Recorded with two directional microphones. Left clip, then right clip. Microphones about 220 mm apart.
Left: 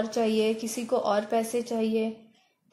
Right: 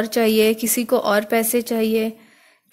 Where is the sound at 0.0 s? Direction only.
40° right (ahead or behind).